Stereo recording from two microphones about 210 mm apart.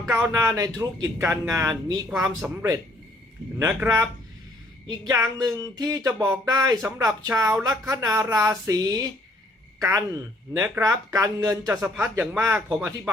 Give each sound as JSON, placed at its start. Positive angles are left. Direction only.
{"t": 0.1, "sound": "speech", "side_deg": -10}
{"t": 3.6, "sound": "speech", "side_deg": -10}